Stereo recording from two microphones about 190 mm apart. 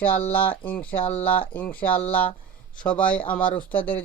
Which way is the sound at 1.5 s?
10° left (ahead or behind).